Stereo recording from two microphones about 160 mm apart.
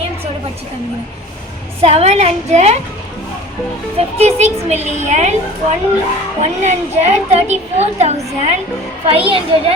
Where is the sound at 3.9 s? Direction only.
40° right (ahead or behind).